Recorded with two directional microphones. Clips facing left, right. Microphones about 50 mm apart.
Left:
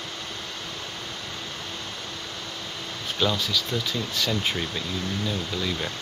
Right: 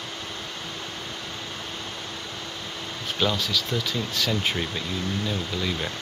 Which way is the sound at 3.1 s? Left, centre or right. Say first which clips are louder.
Even; centre.